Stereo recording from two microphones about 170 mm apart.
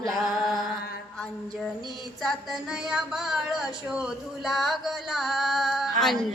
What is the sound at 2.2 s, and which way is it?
Speech, centre (ahead or behind).